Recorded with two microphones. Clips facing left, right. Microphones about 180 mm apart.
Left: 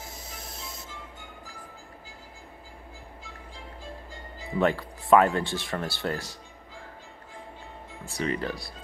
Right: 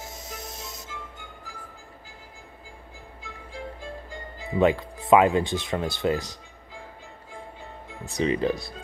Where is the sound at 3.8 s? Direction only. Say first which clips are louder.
Right 4 dB; 55° right (ahead or behind).